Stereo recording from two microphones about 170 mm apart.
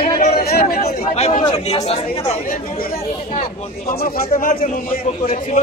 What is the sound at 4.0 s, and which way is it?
Speech, 55° left (ahead or behind).